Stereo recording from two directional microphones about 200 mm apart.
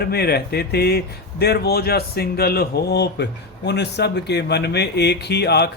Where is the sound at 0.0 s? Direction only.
50° left (ahead or behind).